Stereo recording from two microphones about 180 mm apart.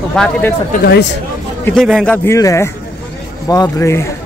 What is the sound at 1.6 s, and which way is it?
Speech, 5° left (ahead or behind).